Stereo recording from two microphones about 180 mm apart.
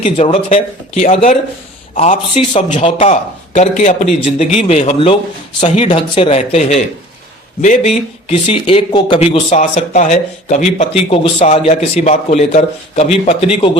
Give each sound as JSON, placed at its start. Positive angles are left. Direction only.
{"t": 0.0, "sound": "speech", "side_deg": 30}
{"t": 0.5, "sound": "speech", "side_deg": 45}
{"t": 8.3, "sound": "speech", "side_deg": 30}